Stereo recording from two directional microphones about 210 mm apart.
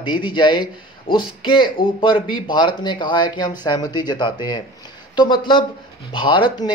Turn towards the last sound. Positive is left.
turn(degrees=20)  # may be behind; listen again after turning